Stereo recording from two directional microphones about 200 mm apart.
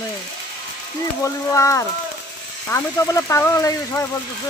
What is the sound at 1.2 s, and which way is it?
Speech, 15° left (ahead or behind).